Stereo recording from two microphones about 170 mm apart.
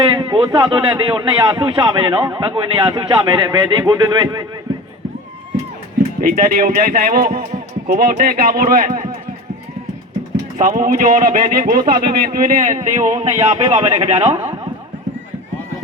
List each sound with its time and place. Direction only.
0.1 s a man's voice: 25° right (ahead or behind)
6.1 s speech: 55° right (ahead or behind)
10.6 s a man's voice: 55° right (ahead or behind); by 14.6 s 30° right (ahead or behind)